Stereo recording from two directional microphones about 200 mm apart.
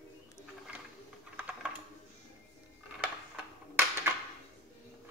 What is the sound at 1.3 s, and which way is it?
Typing, 5° right (ahead or behind).